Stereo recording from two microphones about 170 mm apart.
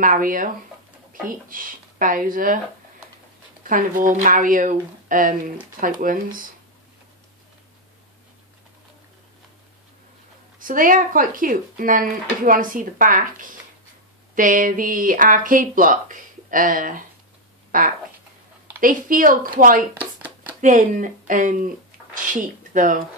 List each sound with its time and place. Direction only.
0.0 s speech: 55° right (ahead or behind)
1.5 s speech: 55° right (ahead or behind)
3.6 s speech: 55° right (ahead or behind)
10.6 s speech: 55° right (ahead or behind)
17.6 s a sound: 55° right (ahead or behind)
18.8 s speech: 55° right (ahead or behind)
20.0 s a sound: 10° right (ahead or behind)
20.6 s speech: 50° right (ahead or behind)